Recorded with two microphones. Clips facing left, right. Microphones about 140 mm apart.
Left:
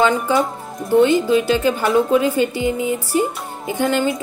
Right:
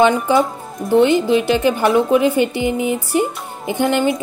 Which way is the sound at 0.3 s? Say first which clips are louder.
Right 3 dB; centre (ahead or behind).